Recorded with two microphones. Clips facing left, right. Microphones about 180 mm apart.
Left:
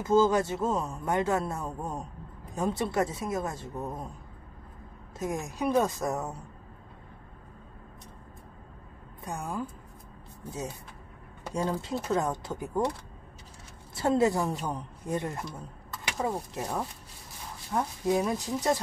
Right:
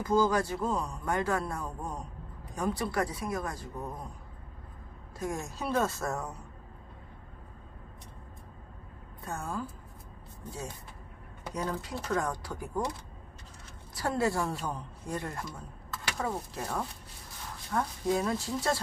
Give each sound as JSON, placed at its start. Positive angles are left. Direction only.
{"t": 0.0, "sound": "speech", "side_deg": 25}
{"t": 5.2, "sound": "a woman's voice", "side_deg": 20}
{"t": 9.2, "sound": "a woman's voice", "side_deg": 15}
{"t": 11.8, "sound": "speech", "side_deg": 20}
{"t": 13.9, "sound": "a woman's voice", "side_deg": 20}